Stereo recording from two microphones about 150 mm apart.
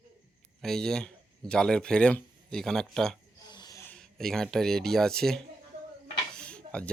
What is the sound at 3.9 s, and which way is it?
Speech, 5° left (ahead or behind).